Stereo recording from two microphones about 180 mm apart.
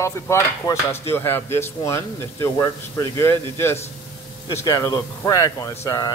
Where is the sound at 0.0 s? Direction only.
15° left (ahead or behind).